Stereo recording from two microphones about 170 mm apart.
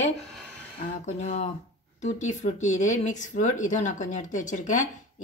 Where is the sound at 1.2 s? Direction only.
45° left (ahead or behind).